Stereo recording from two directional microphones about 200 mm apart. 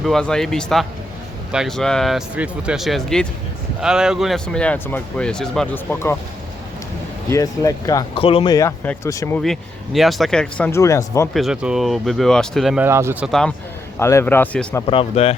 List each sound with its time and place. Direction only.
0.0 s speech: 5° left (ahead or behind)
7.3 s speech: 15° left (ahead or behind)
8.5 s speech: 10° left (ahead or behind)
9.4 s speech: centre (ahead or behind)
11.3 s speech: 5° right (ahead or behind)
14.0 s speech: 15° left (ahead or behind)
14.8 s speech: 30° left (ahead or behind)